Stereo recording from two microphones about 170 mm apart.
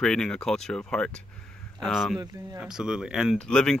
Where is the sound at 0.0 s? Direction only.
5° left (ahead or behind).